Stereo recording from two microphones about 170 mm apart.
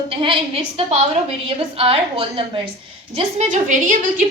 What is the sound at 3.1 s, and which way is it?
A woman's voice, 45° right (ahead or behind).